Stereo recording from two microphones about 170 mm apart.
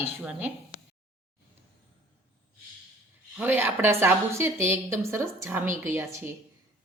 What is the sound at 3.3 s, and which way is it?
A woman's voice, 10° right (ahead or behind).